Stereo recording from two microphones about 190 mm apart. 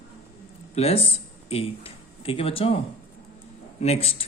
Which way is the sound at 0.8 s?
30° left (ahead or behind).